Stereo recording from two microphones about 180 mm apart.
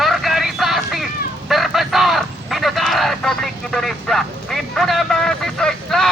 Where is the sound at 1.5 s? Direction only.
Centre (ahead or behind).